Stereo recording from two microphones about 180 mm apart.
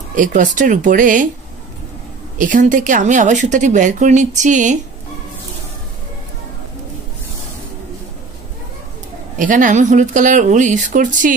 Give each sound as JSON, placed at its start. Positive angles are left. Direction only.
{"t": 0.1, "sound": "a woman's voice", "side_deg": -45}
{"t": 2.3, "sound": "a woman's voice", "side_deg": -45}
{"t": 9.4, "sound": "a woman's voice", "side_deg": -45}